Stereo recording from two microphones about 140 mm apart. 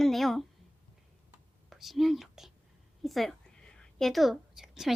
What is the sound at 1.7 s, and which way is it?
Speech, centre (ahead or behind).